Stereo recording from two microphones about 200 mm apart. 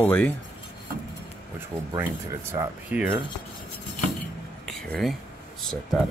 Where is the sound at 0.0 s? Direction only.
10° left (ahead or behind).